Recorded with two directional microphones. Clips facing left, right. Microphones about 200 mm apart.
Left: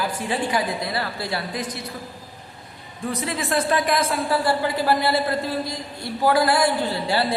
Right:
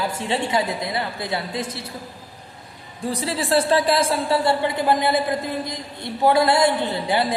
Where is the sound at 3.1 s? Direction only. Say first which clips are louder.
Right 3 dB; 30° right (ahead or behind).